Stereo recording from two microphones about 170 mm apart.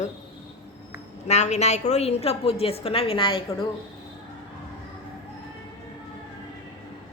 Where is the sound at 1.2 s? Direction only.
40° left (ahead or behind).